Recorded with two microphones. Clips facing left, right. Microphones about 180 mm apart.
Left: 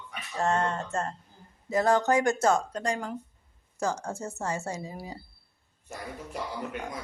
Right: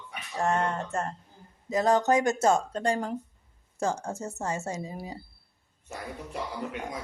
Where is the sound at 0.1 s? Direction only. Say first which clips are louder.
Even; 15° right (ahead or behind).